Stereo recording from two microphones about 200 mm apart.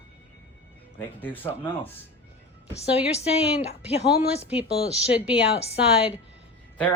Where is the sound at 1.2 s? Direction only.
10° left (ahead or behind).